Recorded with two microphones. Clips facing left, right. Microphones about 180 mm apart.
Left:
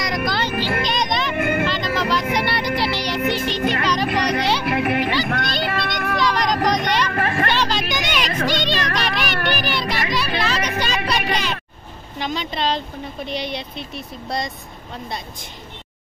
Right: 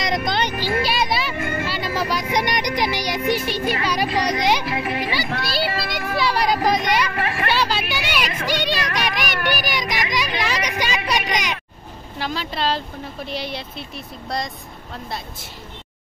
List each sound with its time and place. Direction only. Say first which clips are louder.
0.0 s a sound: right 1 dB; 20° right (ahead or behind)
0.8 s music: even; 5° right (ahead or behind)
1.3 s vehicle: left 5 dB; 60° left (ahead or behind)
1.7 s vehicle: left 2 dB; 10° right (ahead or behind)
2.3 s music: even; 15° right (ahead or behind)
4.6 s music: left 4 dB; 60° left (ahead or behind)
5.1 s music: left 2 dB; 5° right (ahead or behind)
5.8 s a sound: left 1 dB; 5° right (ahead or behind)
7.2 s vehicle: left 3 dB; 45° left (ahead or behind)
7.4 s a sound: even; 10° right (ahead or behind)
12.2 s speech: left 1 dB; 5° right (ahead or behind)